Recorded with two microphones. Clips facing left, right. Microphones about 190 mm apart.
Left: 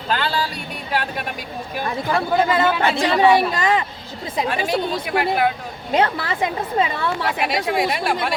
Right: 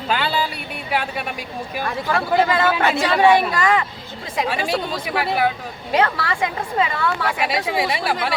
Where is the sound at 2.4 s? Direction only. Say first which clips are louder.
Even; 20° left (ahead or behind).